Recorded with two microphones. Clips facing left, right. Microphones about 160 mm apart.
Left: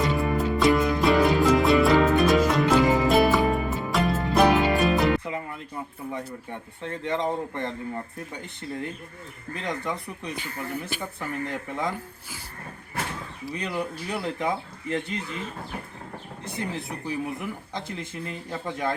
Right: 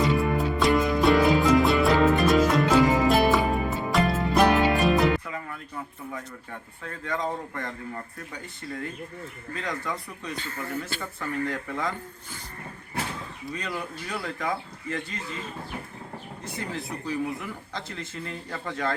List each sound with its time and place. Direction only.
0.0 s music: centre (ahead or behind)
5.2 s a sound: 20° left (ahead or behind)
8.3 s speech: 25° left (ahead or behind)
13.5 s speech: 20° left (ahead or behind)
16.4 s speech: 20° left (ahead or behind)